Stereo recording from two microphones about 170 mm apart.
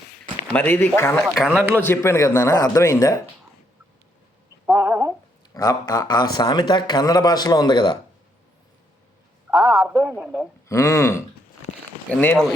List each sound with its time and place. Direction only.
0.5 s a man's voice: 10° left (ahead or behind)
1.2 s a man's voice: centre (ahead or behind)
1.7 s a man's voice: 15° left (ahead or behind)
4.8 s a sound: 15° right (ahead or behind)
5.5 s speech: 20° left (ahead or behind)
9.5 s a sound: centre (ahead or behind)
9.9 s a man's voice: 10° right (ahead or behind)
10.7 s a man's voice: 15° left (ahead or behind)